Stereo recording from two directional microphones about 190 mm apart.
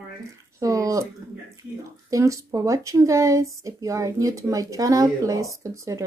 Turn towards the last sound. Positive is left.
turn(degrees=-15)  # may be behind; listen again after turning